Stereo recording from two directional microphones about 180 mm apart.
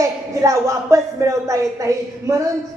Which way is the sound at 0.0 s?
15° right (ahead or behind).